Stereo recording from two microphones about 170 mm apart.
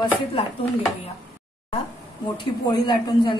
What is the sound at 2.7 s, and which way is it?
Speech, 25° left (ahead or behind).